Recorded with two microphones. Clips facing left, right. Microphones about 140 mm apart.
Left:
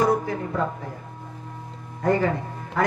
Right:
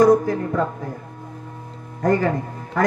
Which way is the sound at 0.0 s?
40° right (ahead or behind).